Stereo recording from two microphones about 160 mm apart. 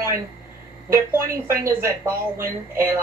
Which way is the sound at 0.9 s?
15° right (ahead or behind).